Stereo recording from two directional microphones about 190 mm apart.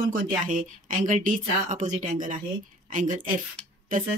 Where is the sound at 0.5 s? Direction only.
45° right (ahead or behind).